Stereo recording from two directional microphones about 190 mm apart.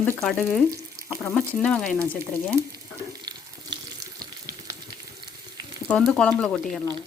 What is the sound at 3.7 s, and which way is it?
Water, 20° right (ahead or behind).